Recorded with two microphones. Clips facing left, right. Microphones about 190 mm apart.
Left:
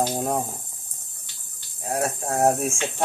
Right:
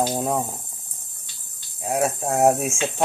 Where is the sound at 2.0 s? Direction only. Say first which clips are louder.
Right 3 dB; 25° right (ahead or behind).